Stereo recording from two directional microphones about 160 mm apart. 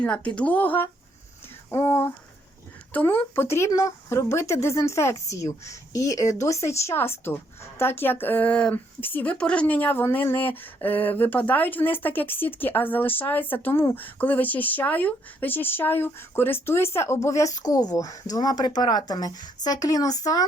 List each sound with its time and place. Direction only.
0.0 s a woman's voice: 10° left (ahead or behind)